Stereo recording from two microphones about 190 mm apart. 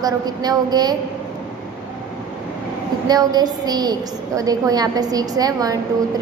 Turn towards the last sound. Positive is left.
turn(degrees=-20)  # may be behind; listen again after turning